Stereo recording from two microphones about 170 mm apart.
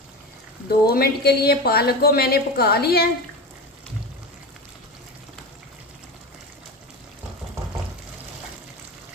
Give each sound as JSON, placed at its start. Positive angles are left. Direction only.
{"t": 0.9, "sound": "a woman's voice", "side_deg": 65}